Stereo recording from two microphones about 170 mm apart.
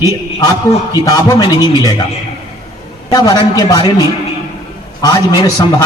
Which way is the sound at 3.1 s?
25° left (ahead or behind).